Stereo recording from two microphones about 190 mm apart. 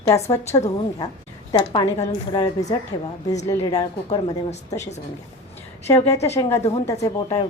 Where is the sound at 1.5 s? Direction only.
20° left (ahead or behind).